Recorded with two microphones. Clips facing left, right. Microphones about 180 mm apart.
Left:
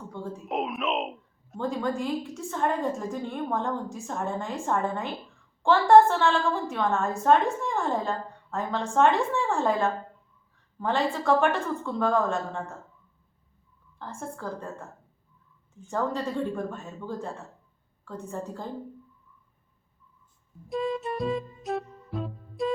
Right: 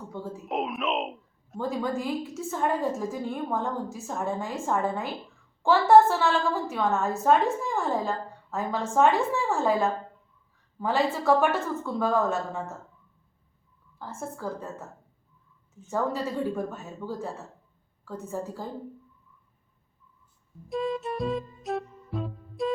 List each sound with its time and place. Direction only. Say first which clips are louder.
0.1 s a woman's voice: even; 5° right (ahead or behind)
14.0 s a woman's voice: right 1 dB; 5° right (ahead or behind)
15.9 s a woman's voice: even; 5° right (ahead or behind)
20.7 s music: even; centre (ahead or behind)